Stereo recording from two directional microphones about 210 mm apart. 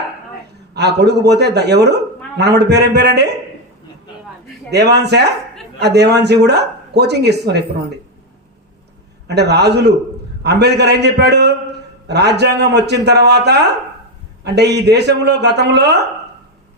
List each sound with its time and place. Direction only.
0.7 s speech: 50° right (ahead or behind)
4.7 s speech: 50° right (ahead or behind)
9.2 s speech: 50° right (ahead or behind)